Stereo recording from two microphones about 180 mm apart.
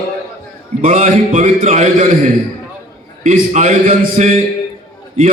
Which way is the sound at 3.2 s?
45° right (ahead or behind).